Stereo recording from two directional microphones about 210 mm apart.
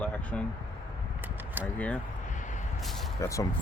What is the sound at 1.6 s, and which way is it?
Speech, 10° right (ahead or behind).